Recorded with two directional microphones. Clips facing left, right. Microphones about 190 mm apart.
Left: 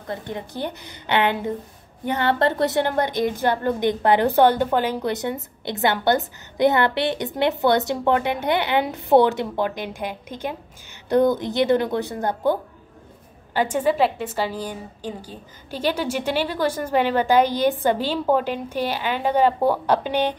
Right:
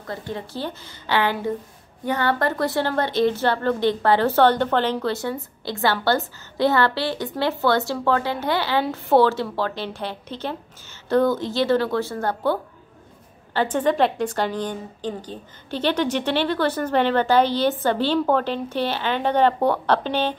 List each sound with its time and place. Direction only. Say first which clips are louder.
0.0 s a woman's voice: left 1 dB; 20° left (ahead or behind)